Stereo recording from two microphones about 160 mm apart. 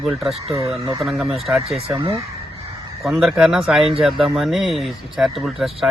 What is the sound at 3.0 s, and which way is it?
Speech, centre (ahead or behind).